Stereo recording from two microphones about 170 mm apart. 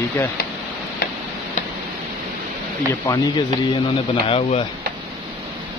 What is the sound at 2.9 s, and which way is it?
Speech, 20° left (ahead or behind).